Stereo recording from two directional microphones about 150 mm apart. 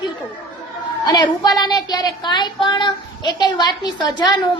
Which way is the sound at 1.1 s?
25° left (ahead or behind).